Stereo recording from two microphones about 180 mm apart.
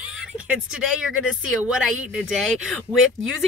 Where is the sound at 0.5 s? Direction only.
5° right (ahead or behind).